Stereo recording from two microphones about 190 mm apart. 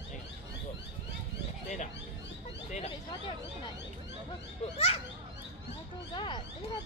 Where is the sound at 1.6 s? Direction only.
40° left (ahead or behind).